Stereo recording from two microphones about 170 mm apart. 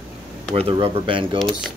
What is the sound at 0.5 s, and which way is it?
Speech, 30° right (ahead or behind).